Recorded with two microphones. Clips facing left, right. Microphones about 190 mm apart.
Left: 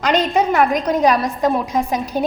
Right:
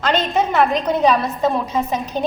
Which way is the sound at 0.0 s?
10° left (ahead or behind).